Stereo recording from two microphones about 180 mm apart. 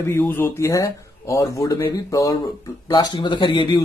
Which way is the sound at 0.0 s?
10° left (ahead or behind).